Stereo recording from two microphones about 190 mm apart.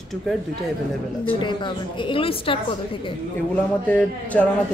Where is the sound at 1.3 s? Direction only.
25° left (ahead or behind).